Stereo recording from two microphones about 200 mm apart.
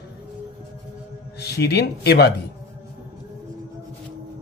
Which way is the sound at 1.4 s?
55° left (ahead or behind).